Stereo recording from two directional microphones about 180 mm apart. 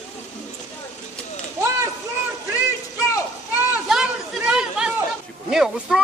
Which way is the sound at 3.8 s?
Centre (ahead or behind).